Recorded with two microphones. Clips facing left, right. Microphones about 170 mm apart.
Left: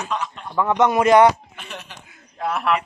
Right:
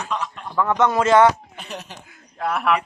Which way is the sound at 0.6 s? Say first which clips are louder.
Left 1 dB; 15° left (ahead or behind).